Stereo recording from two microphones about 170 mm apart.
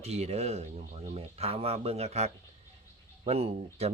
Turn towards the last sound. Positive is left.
turn(degrees=-35)  # may be behind; listen again after turning